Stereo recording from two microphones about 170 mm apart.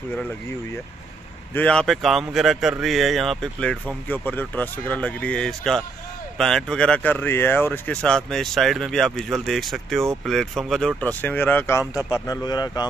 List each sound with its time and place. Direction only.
1.5 s speech: 5° left (ahead or behind); by 12.8 s 25° left (ahead or behind)